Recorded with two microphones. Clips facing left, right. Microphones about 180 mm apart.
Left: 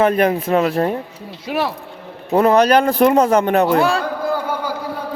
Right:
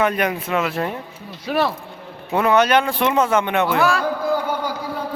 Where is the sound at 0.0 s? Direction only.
30° left (ahead or behind).